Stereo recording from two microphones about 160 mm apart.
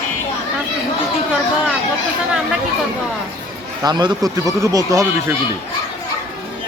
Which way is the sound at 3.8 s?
25° right (ahead or behind).